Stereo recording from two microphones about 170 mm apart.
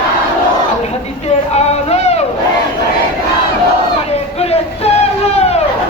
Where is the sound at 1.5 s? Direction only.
40° left (ahead or behind).